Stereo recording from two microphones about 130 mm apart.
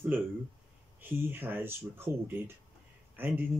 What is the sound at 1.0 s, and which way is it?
Speech, 15° right (ahead or behind).